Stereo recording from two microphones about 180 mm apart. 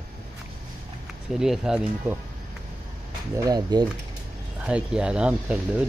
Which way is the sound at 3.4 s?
20° right (ahead or behind).